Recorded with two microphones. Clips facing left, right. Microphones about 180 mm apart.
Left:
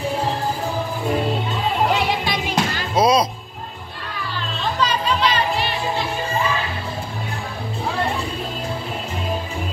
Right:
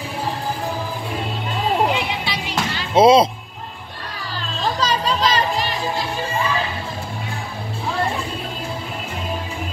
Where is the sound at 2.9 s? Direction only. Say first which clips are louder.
Right 5 dB; 25° right (ahead or behind).